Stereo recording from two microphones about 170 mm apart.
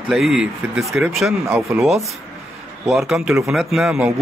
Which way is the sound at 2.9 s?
Centre (ahead or behind).